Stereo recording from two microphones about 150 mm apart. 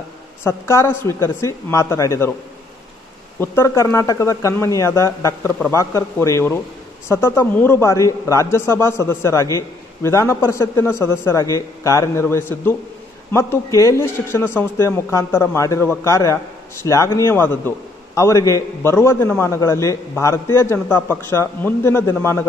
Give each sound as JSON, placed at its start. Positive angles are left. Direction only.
{"t": 0.4, "sound": "speech", "side_deg": 20}
{"t": 3.3, "sound": "a man's voice", "side_deg": 20}